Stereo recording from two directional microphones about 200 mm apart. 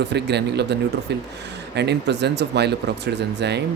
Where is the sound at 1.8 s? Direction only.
60° right (ahead or behind).